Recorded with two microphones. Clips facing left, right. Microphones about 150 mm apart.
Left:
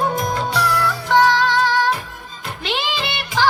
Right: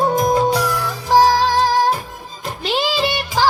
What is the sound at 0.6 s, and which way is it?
Music, 15° right (ahead or behind).